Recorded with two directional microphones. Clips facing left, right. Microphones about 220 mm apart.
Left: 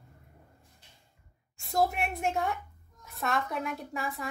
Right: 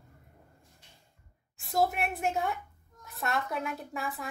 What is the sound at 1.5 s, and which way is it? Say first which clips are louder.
A woman's voice: even; centre (ahead or behind).